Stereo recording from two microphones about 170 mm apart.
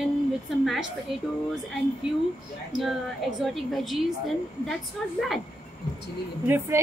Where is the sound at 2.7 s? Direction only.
Centre (ahead or behind).